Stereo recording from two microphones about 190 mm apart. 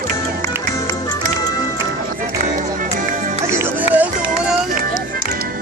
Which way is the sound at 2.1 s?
45° right (ahead or behind).